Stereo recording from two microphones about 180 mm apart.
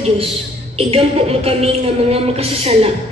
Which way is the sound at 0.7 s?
35° right (ahead or behind).